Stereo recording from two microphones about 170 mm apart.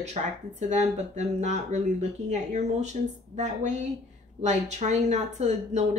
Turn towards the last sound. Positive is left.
turn(degrees=-40)  # may be behind; listen again after turning